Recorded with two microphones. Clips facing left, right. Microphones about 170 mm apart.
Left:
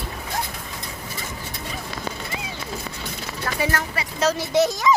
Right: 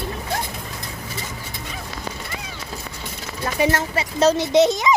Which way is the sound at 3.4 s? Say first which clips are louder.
Right 5 dB; 20° right (ahead or behind).